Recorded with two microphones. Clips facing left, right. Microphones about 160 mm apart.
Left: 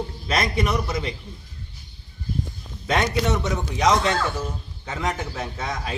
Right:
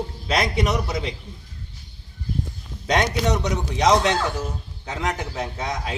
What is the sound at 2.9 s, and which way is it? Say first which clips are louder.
Speech: right 1 dB; 15° right (ahead or behind).